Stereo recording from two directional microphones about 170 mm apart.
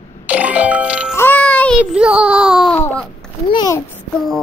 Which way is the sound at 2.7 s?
10° left (ahead or behind).